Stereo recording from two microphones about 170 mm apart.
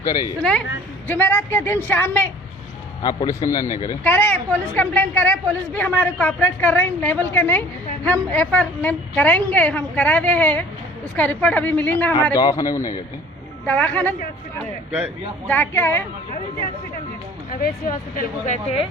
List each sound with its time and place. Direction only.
1.0 s a woman's voice: 10° left (ahead or behind)
3.0 s speech: 25° left (ahead or behind)
4.0 s a woman's voice: 10° left (ahead or behind)
12.1 s speech: 25° left (ahead or behind)
13.7 s a woman's voice: 10° left (ahead or behind)
15.4 s a woman's voice: 10° left (ahead or behind)
17.5 s speech: 55° left (ahead or behind)